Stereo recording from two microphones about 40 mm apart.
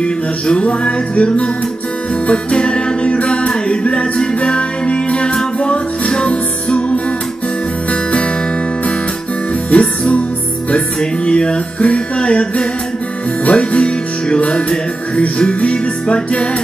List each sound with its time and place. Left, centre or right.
0.0 s music: left
9.7 s music: left